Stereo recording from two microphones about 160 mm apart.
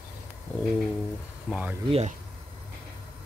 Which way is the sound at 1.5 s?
10° right (ahead or behind).